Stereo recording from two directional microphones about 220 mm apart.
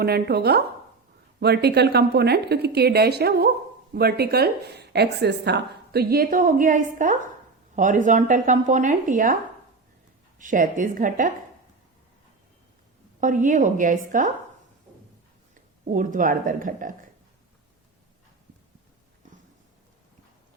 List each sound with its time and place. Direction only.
0.0 s a woman's voice: 45° right (ahead or behind)
13.1 s speech: 35° right (ahead or behind)
15.9 s speech: 35° right (ahead or behind)